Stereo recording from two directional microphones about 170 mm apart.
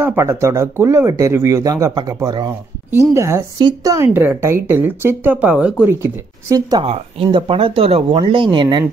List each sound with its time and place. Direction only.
0.0 s speech: 15° right (ahead or behind)
5.9 s speech: 15° right (ahead or behind)
6.8 s speech: 35° right (ahead or behind)